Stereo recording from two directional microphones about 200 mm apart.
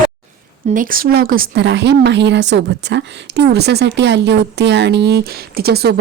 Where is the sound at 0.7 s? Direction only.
45° right (ahead or behind).